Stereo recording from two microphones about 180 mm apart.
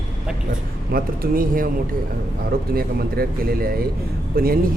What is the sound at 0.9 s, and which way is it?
Speech, 55° right (ahead or behind).